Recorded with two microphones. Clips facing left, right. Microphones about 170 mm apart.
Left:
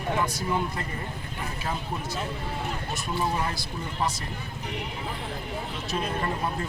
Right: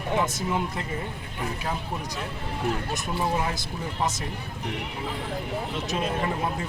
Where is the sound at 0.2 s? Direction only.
15° right (ahead or behind).